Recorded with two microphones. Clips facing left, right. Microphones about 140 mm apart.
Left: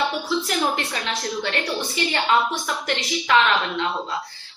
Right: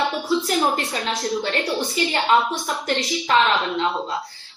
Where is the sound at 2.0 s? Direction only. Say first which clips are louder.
Right 1 dB; 30° right (ahead or behind).